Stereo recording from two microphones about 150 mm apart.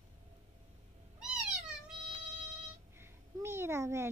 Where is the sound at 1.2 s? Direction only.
5° right (ahead or behind).